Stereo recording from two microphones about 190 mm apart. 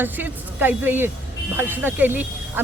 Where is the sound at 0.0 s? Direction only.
10° right (ahead or behind).